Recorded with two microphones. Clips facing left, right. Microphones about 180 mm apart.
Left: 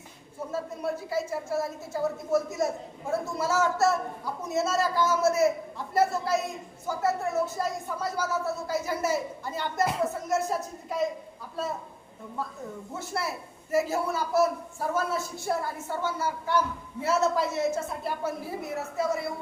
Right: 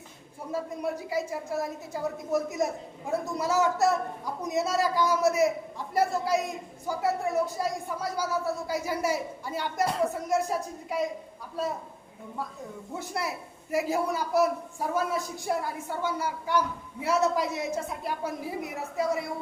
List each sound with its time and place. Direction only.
0.5 s a woman's voice: 15° right (ahead or behind)
9.8 s speech: 5° left (ahead or behind)
10.2 s a woman's voice: 10° right (ahead or behind)
13.0 s a woman's voice: 15° right (ahead or behind)